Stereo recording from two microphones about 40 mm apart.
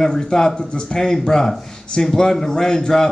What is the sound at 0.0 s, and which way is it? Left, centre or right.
Speech, centre.